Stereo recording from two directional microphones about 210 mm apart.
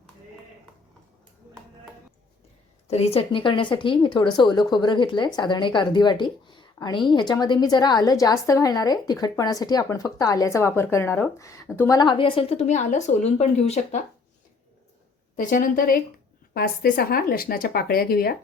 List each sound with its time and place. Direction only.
2.8 s speech: 30° left (ahead or behind)
15.4 s a woman's voice: 40° left (ahead or behind)